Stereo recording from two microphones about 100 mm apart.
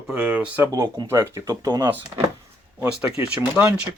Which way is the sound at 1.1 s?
25° right (ahead or behind).